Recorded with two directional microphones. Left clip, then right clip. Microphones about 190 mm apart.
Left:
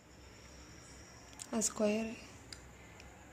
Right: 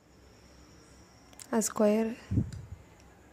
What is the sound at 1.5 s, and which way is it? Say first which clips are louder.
Speech: right 8 dB; 40° right (ahead or behind).